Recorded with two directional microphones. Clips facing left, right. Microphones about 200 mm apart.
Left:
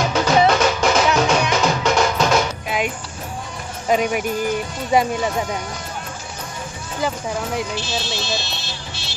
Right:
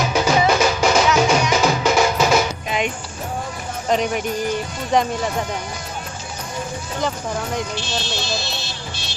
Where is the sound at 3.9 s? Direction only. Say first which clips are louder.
Left 1 dB; 5° left (ahead or behind).